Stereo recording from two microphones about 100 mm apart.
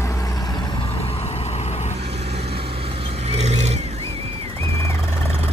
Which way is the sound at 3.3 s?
90° right.